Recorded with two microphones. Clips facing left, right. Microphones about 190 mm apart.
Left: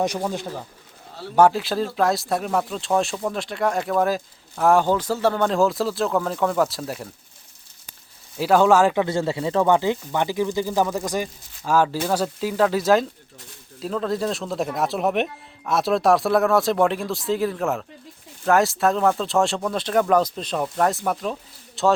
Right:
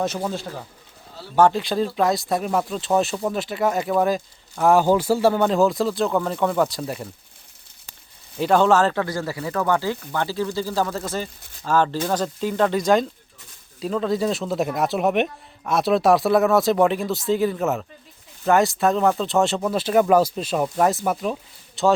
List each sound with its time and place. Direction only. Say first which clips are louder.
0.0 s speech: left 1 dB; 10° left (ahead or behind)
8.4 s speech: left 1 dB; 5° left (ahead or behind)
9.0 s speech: left 4 dB; 25° left (ahead or behind); by 21.9 s centre (ahead or behind)